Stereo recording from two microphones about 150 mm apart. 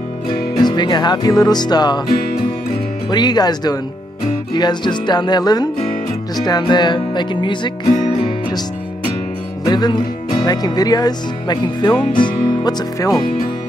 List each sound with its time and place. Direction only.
0.6 s speech: 30° left (ahead or behind)
3.1 s speech: 30° left (ahead or behind)
9.7 s speech: 25° left (ahead or behind)